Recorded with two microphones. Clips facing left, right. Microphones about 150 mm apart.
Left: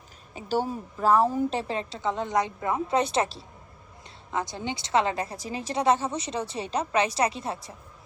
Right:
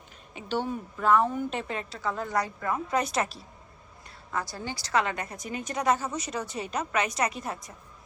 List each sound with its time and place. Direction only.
0.3 s a woman's voice: 40° left (ahead or behind)